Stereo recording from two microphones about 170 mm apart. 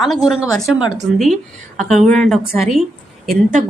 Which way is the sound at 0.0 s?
Centre (ahead or behind).